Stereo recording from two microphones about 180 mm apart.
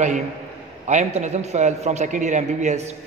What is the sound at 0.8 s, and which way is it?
A man's voice, 40° right (ahead or behind).